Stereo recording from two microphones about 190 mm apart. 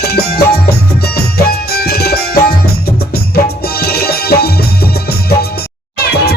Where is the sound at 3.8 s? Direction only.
55° left (ahead or behind).